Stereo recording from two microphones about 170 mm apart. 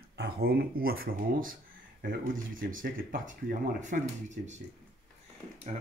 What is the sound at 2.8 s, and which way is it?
Speech, 55° right (ahead or behind).